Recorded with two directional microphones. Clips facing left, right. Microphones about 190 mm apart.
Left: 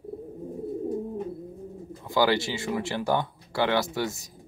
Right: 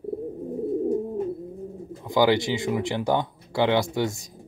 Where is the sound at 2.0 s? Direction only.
20° right (ahead or behind).